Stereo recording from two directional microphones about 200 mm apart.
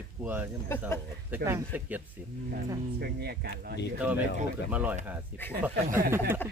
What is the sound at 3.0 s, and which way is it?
Speech, 50° right (ahead or behind).